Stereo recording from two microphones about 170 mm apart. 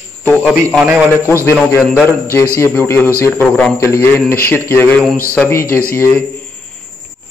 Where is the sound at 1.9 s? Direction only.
15° left (ahead or behind).